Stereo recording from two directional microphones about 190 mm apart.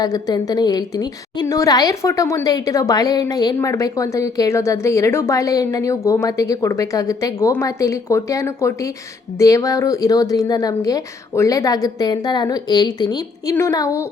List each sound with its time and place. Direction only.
0.0 s a woman's voice: 20° left (ahead or behind)